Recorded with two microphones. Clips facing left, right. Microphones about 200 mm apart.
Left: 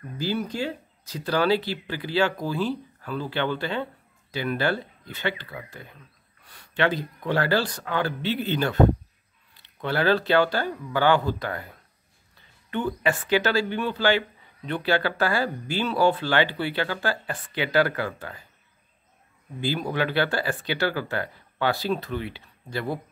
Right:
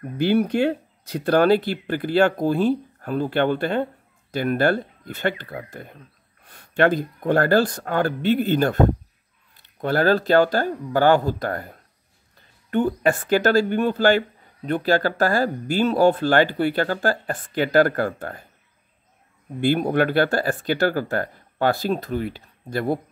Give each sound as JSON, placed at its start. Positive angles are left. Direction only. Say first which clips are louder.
{"t": 0.2, "sound": "speech", "louder": "right 9 dB", "side_deg": -65}
{"t": 19.6, "sound": "speech", "louder": "right 7 dB", "side_deg": -55}